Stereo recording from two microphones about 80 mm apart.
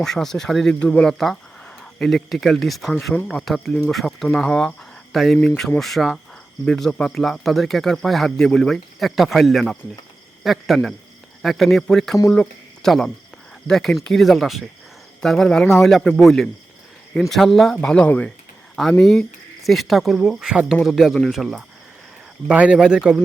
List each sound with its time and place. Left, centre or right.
0.0 s speech: centre
12.3 s a sound: centre
13.7 s speech: centre
17.8 s speech: centre
18.8 s speech: centre
22.4 s a man's voice: centre